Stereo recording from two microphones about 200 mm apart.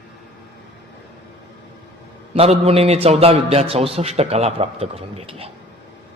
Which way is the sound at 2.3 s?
30° right (ahead or behind).